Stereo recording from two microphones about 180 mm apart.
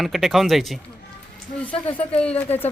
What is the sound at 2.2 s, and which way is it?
Speech, 5° left (ahead or behind).